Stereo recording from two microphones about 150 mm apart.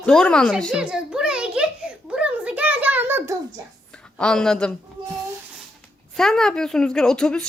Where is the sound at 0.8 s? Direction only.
5° right (ahead or behind).